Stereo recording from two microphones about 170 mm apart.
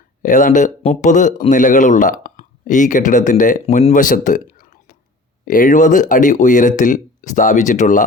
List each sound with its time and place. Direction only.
0.2 s speech: 50° left (ahead or behind)